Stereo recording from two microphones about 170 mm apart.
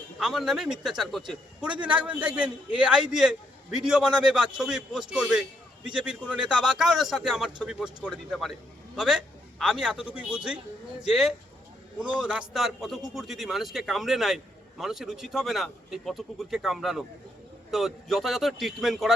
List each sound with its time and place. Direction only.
0.2 s a man's voice: centre (ahead or behind)